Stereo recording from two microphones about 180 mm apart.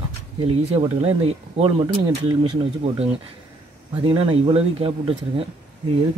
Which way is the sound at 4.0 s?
30° right (ahead or behind).